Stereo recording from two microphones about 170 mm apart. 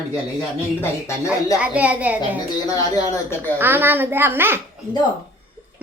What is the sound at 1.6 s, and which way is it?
Speech, 10° right (ahead or behind).